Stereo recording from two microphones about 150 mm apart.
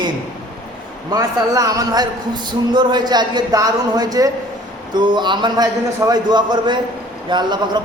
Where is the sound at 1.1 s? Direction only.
25° right (ahead or behind).